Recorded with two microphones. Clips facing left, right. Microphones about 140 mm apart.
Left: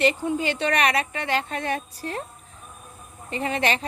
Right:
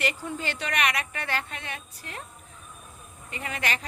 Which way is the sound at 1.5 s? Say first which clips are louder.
Left 11 dB; 40° left (ahead or behind).